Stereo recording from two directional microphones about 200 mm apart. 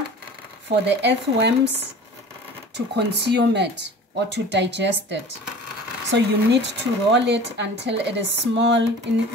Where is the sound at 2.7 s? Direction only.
60° right (ahead or behind).